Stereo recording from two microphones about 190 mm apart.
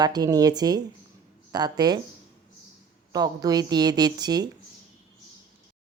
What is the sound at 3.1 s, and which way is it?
A woman's voice, 20° right (ahead or behind).